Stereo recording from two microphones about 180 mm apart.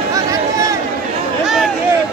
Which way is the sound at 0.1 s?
20° right (ahead or behind).